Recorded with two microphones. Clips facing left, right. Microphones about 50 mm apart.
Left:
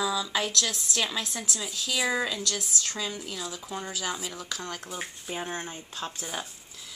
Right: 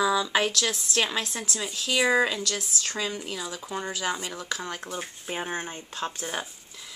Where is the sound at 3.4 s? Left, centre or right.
Centre.